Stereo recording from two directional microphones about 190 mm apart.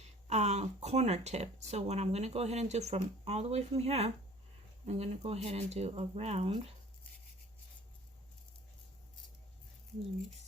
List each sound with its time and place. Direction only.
0.0 s speech: 35° right (ahead or behind)